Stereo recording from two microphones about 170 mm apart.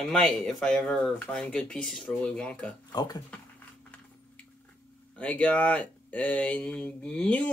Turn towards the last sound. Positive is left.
turn(degrees=5)  # may be behind; listen again after turning